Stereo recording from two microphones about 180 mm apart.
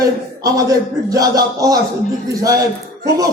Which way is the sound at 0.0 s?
20° right (ahead or behind).